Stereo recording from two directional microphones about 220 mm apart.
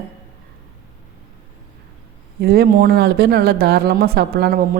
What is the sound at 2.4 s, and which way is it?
Speech, 45° right (ahead or behind).